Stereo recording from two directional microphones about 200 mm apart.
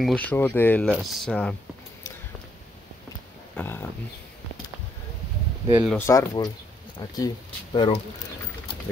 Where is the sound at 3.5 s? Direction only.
10° left (ahead or behind).